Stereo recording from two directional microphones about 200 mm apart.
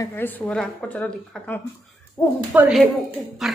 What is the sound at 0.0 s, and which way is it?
A woman's voice, 10° left (ahead or behind).